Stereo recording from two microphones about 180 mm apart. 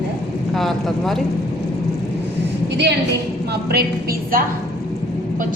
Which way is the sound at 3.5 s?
60° right (ahead or behind).